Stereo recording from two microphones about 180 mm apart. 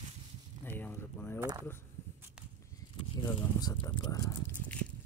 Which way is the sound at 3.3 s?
20° left (ahead or behind).